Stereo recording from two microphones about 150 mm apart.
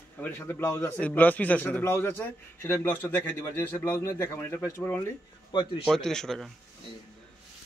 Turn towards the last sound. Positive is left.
turn(degrees=5)  # may be behind; listen again after turning